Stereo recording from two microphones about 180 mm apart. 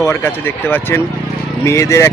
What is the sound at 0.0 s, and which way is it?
A man's voice, 10° left (ahead or behind).